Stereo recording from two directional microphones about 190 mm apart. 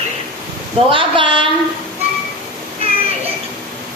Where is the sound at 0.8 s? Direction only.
25° right (ahead or behind).